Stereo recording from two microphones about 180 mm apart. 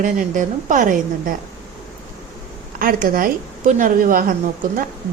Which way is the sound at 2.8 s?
50° right (ahead or behind).